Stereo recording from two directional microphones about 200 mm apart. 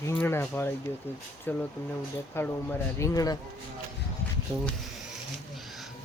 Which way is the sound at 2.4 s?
10° left (ahead or behind).